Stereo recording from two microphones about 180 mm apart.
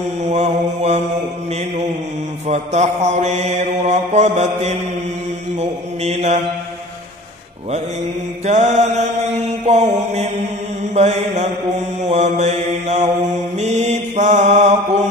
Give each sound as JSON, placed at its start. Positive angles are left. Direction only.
{"t": 0.2, "sound": "mantra", "side_deg": -40}
{"t": 2.4, "sound": "mantra", "side_deg": -40}
{"t": 8.5, "sound": "mantra", "side_deg": -40}